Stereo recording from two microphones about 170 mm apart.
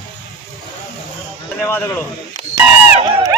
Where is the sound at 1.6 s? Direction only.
10° left (ahead or behind).